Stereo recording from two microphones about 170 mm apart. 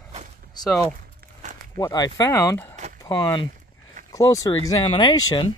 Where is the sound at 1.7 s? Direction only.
20° left (ahead or behind).